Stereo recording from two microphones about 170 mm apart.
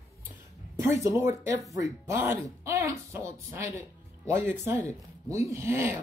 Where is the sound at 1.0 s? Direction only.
15° right (ahead or behind).